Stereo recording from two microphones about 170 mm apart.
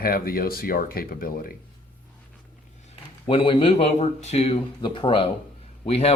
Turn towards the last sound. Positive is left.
turn(degrees=35)  # may be behind; listen again after turning